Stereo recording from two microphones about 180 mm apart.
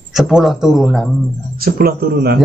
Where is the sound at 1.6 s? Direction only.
55° right (ahead or behind).